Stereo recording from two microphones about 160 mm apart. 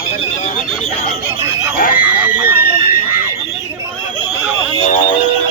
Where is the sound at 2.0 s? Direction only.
10° right (ahead or behind).